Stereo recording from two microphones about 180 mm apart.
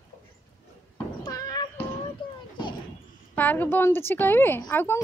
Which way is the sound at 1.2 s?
20° left (ahead or behind).